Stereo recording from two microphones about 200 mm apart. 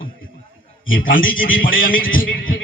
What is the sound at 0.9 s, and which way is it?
A man's voice, 45° left (ahead or behind).